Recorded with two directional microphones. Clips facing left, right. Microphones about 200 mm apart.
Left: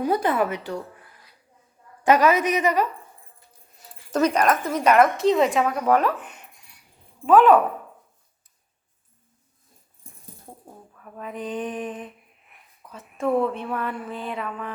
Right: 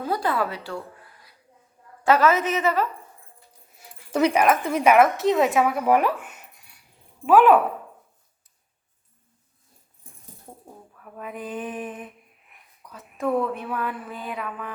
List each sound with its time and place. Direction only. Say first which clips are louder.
0.0 s a woman's voice: left 3 dB; 20° left (ahead or behind)
2.0 s a woman's voice: left 1 dB; 15° left (ahead or behind)
3.8 s speech: even; 10° right (ahead or behind)
10.9 s speech: left 1 dB; 5° right (ahead or behind)